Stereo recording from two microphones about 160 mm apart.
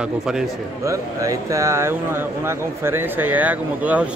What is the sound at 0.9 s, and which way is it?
Speech, 20° right (ahead or behind).